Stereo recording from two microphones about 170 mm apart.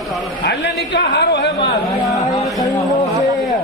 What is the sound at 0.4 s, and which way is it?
A man's voice, 80° left.